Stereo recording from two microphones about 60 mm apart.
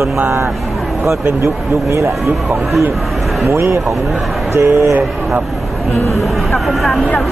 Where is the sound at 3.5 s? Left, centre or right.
Right.